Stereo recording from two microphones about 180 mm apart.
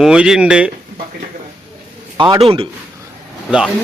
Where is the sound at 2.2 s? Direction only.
30° right (ahead or behind).